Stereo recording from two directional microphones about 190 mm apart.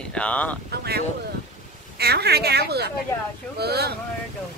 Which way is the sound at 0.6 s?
55° right (ahead or behind).